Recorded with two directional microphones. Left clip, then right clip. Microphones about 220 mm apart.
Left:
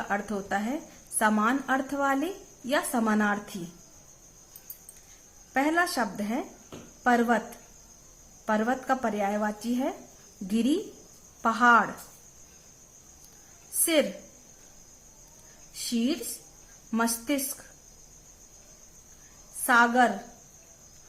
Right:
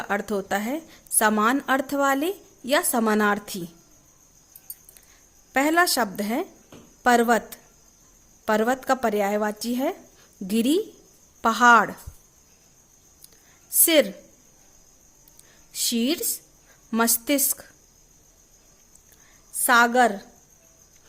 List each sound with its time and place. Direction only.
0.1 s a woman's voice: 45° right (ahead or behind)
5.5 s a woman's voice: 45° right (ahead or behind)
8.4 s a woman's voice: 45° right (ahead or behind)
15.9 s a woman's voice: 45° right (ahead or behind)
19.6 s a woman's voice: 40° right (ahead or behind)